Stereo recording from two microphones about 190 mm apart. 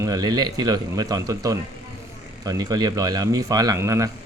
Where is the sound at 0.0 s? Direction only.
20° right (ahead or behind).